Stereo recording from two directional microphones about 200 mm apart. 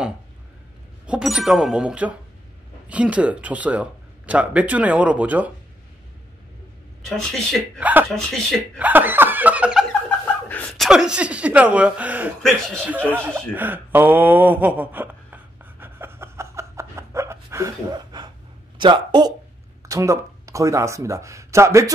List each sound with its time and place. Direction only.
1.0 s speech: 5° right (ahead or behind)
7.1 s speech: centre (ahead or behind)
10.0 s chuckle: 5° left (ahead or behind)
10.9 s speech: 5° right (ahead or behind)
13.5 s a sound: 10° right (ahead or behind)
18.8 s speech: 20° right (ahead or behind)